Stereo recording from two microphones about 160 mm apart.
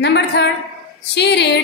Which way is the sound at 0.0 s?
90° left.